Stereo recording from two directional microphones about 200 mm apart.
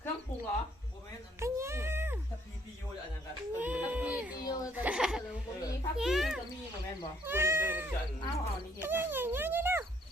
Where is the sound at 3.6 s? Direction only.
10° right (ahead or behind).